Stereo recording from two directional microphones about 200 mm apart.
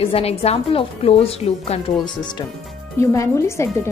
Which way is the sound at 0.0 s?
30° left (ahead or behind).